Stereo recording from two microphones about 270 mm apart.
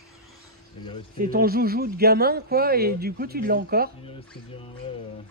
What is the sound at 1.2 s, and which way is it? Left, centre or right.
A man's voice, right.